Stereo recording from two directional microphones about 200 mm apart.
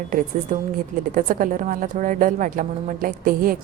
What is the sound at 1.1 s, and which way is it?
A woman's voice, 40° right (ahead or behind).